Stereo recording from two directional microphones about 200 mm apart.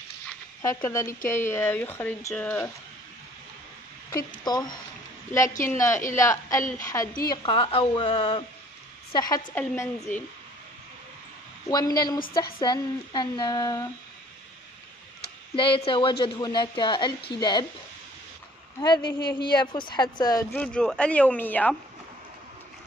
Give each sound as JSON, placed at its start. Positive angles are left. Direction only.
{"t": 0.6, "sound": "speech", "side_deg": 20}
{"t": 4.5, "sound": "speech", "side_deg": 20}
{"t": 11.7, "sound": "speech", "side_deg": 20}
{"t": 15.5, "sound": "speech", "side_deg": 25}
{"t": 18.8, "sound": "speech", "side_deg": 20}
{"t": 20.5, "sound": "speech", "side_deg": 5}